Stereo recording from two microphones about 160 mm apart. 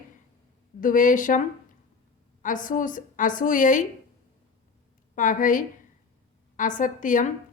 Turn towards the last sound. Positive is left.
turn(degrees=55)  # may be behind; listen again after turning